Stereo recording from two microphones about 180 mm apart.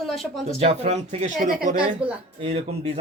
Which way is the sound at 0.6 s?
40° right (ahead or behind).